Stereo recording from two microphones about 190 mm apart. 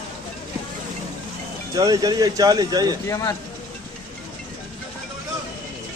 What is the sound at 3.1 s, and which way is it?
Speech, 15° left (ahead or behind).